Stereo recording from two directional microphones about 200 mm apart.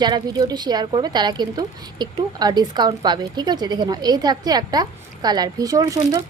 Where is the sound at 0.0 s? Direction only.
20° right (ahead or behind).